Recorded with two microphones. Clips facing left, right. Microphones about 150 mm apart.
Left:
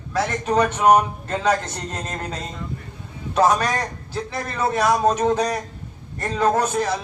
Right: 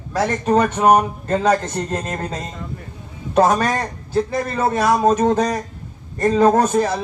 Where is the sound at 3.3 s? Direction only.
45° right (ahead or behind).